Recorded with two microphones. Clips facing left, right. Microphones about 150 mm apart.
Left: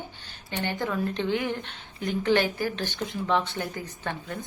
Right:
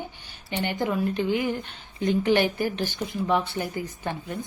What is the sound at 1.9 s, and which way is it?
Speech, 15° right (ahead or behind).